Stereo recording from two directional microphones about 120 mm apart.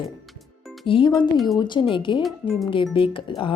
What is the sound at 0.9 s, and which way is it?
A woman's voice, 40° left (ahead or behind).